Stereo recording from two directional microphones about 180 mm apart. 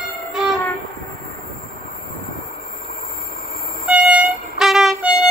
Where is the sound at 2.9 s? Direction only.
55° left (ahead or behind).